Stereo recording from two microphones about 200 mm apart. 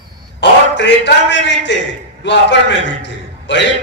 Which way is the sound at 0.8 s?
65° left (ahead or behind).